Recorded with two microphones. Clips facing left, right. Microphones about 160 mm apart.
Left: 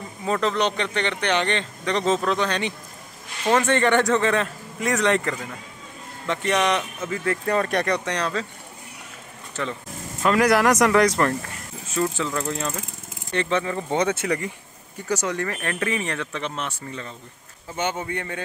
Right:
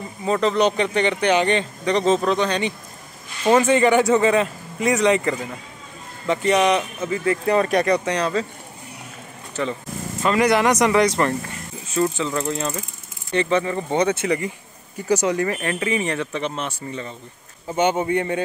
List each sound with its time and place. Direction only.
0.2 s speech: centre (ahead or behind)
9.6 s speech: 5° right (ahead or behind)
17.6 s speech: 20° right (ahead or behind)